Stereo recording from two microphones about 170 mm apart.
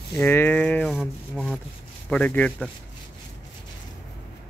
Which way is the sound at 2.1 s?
10° left (ahead or behind).